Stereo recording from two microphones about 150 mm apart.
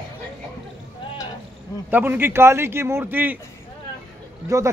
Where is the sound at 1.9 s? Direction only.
15° right (ahead or behind).